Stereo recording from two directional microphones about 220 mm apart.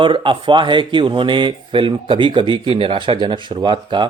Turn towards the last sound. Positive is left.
turn(degrees=-20)  # may be behind; listen again after turning